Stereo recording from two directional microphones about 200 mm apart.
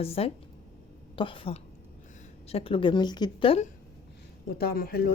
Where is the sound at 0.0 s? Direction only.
30° left (ahead or behind).